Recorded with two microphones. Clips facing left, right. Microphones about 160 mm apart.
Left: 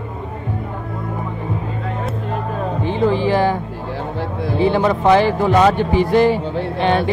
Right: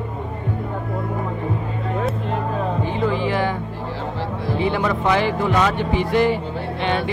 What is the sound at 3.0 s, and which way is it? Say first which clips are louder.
Music: left 6 dB; 30° left (ahead or behind).